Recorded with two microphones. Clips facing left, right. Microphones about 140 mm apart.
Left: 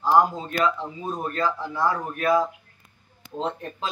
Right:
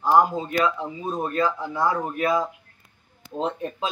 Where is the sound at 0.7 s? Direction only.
10° right (ahead or behind).